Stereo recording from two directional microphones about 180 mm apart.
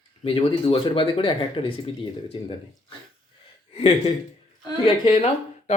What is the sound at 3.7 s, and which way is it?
Speech, 35° left (ahead or behind).